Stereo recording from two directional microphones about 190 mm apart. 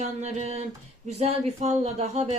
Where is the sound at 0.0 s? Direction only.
35° right (ahead or behind).